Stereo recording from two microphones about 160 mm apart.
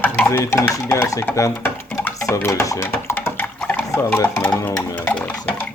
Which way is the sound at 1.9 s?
10° left (ahead or behind).